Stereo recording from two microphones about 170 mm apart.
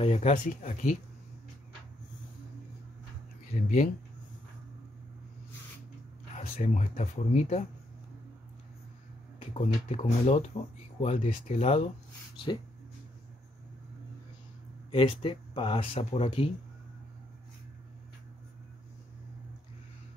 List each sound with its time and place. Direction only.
0.0 s speech: 40° left (ahead or behind)
3.5 s speech: 45° left (ahead or behind)
6.3 s speech: 45° left (ahead or behind)
9.5 s speech: 40° left (ahead or behind)
14.9 s speech: 30° left (ahead or behind)